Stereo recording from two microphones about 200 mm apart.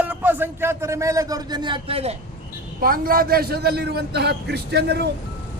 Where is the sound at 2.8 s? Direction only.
45° right (ahead or behind).